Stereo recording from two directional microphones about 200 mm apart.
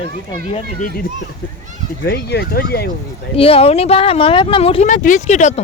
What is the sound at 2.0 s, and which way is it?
Speech, 55° left (ahead or behind).